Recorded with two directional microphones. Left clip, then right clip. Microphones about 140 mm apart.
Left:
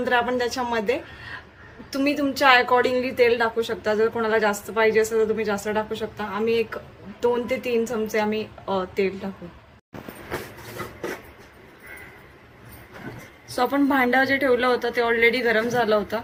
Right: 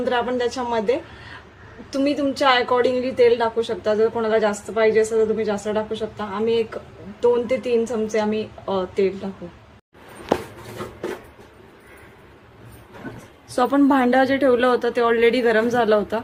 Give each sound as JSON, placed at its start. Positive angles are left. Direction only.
{"t": 0.0, "sound": "a woman's voice", "side_deg": -35}
{"t": 13.6, "sound": "a woman's voice", "side_deg": -55}